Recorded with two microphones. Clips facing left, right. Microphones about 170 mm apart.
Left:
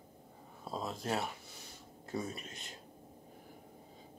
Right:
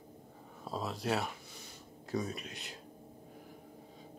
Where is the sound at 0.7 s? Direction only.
Centre (ahead or behind).